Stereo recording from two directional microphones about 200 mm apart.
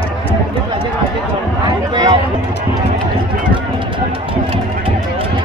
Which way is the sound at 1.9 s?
20° right (ahead or behind).